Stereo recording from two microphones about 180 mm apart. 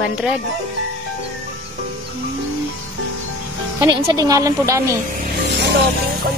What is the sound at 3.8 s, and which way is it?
A woman's voice, 20° right (ahead or behind).